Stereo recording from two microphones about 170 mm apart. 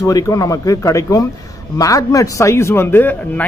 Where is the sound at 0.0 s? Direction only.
20° left (ahead or behind).